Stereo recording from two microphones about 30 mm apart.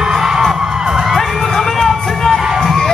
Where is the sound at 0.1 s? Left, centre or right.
Centre.